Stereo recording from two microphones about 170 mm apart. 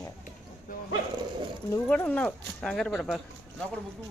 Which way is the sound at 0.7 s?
50° left (ahead or behind).